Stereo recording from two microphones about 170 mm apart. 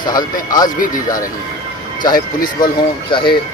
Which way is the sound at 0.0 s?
25° left (ahead or behind).